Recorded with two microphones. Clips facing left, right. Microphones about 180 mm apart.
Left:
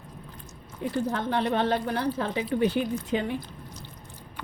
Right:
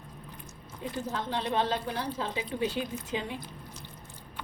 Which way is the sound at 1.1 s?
60° left (ahead or behind).